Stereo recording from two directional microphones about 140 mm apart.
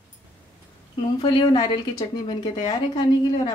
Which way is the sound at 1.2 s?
35° left (ahead or behind).